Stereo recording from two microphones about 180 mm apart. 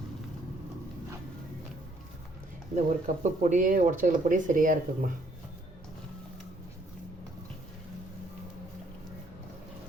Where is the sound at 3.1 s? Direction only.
45° right (ahead or behind).